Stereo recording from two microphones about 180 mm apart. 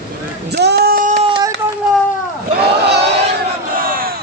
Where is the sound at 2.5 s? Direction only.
65° right (ahead or behind).